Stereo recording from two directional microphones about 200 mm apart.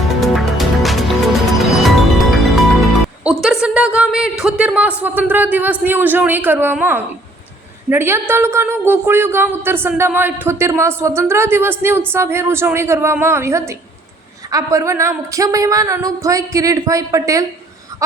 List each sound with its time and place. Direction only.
0.0 s music: centre (ahead or behind)
1.5 s speech: centre (ahead or behind); by 17.4 s 15° right (ahead or behind)